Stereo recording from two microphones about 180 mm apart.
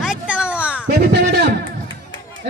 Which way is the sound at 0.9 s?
70° right (ahead or behind).